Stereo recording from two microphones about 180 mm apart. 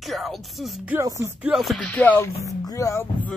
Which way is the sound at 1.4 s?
Centre (ahead or behind).